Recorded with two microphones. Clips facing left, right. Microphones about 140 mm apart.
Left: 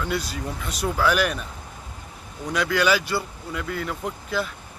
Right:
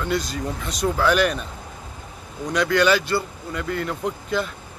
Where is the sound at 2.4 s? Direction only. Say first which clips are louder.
Right 3 dB; 5° left (ahead or behind).